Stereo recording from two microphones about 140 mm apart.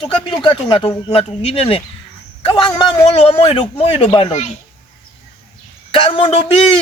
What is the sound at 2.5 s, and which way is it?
Speech, 35° left (ahead or behind).